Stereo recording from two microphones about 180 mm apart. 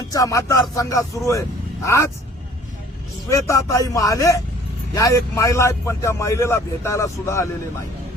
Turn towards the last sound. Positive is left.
turn(degrees=15)  # may be behind; listen again after turning